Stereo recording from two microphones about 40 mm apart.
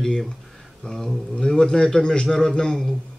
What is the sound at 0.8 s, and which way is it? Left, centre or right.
Speech, centre.